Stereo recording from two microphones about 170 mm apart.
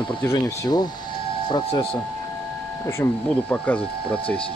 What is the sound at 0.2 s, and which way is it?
Speech, 20° left (ahead or behind).